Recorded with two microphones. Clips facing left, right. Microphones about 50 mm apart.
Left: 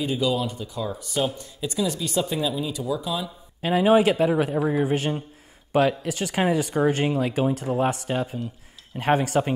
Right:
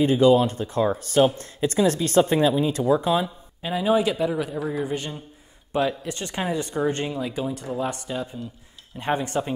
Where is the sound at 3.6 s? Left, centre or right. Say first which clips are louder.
Left 5 dB; left.